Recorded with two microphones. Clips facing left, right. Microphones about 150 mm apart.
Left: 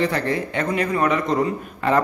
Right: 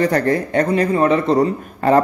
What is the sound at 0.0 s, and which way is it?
A man's voice, 45° right (ahead or behind).